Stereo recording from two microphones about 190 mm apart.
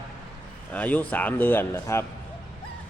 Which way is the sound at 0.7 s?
10° left (ahead or behind).